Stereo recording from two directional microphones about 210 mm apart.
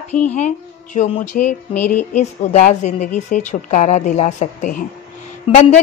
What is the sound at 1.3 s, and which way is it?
Speech, 40° left (ahead or behind).